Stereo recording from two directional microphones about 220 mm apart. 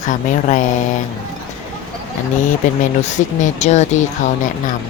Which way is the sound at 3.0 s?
30° left (ahead or behind).